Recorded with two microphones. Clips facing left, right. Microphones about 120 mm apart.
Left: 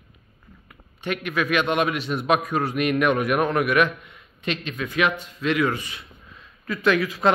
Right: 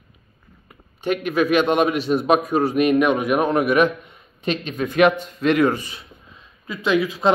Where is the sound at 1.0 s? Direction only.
35° right (ahead or behind).